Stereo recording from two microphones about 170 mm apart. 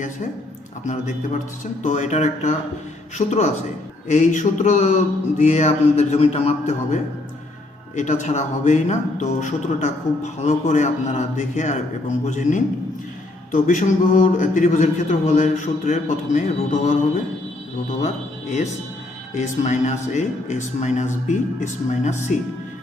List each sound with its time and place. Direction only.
0.9 s a man's voice: 45° left (ahead or behind)
18.0 s speech: 45° left (ahead or behind)